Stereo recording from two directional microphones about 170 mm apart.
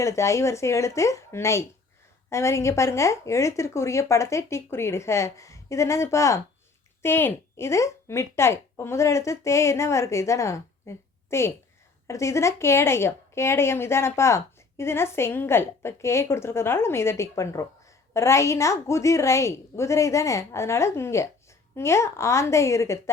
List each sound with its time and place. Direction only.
0.0 s a woman's voice: 15° left (ahead or behind)